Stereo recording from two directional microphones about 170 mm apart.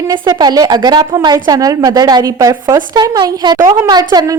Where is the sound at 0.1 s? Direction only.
25° right (ahead or behind).